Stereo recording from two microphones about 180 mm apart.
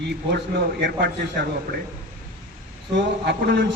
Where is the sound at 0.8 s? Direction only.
65° right (ahead or behind).